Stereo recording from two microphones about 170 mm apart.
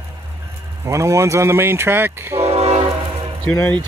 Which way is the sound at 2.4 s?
40° right (ahead or behind).